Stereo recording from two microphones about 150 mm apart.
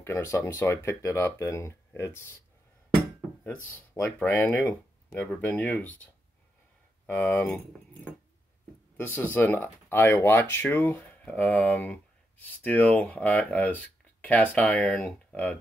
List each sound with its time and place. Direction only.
0.0 s speech: 20° left (ahead or behind)
3.7 s speech: 10° left (ahead or behind)
7.1 s speech: 10° left (ahead or behind)
8.9 s speech: 10° left (ahead or behind)